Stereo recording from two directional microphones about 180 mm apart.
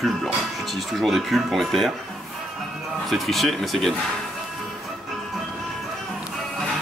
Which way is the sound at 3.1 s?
Centre (ahead or behind).